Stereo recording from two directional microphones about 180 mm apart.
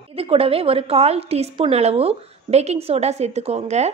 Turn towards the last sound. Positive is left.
turn(degrees=-35)  # may be behind; listen again after turning